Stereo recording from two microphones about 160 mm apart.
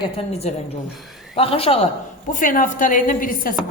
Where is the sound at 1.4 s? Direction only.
35° left (ahead or behind).